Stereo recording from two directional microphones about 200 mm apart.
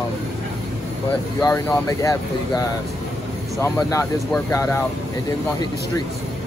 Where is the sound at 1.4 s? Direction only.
15° left (ahead or behind).